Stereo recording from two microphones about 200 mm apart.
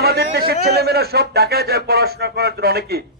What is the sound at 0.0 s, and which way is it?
A man's voice, 50° right (ahead or behind).